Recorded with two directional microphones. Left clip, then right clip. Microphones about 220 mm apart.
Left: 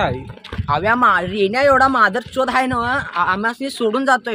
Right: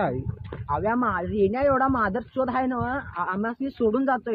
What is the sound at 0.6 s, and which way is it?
Speech, 50° left (ahead or behind).